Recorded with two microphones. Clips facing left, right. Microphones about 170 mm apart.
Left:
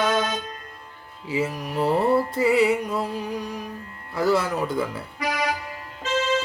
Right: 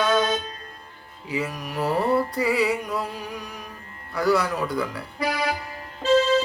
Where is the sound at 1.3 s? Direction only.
25° left (ahead or behind).